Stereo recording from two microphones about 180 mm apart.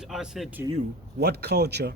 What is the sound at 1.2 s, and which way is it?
Speech, 65° right (ahead or behind).